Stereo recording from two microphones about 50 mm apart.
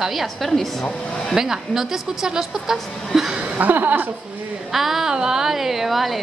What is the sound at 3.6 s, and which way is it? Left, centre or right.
Speech, right.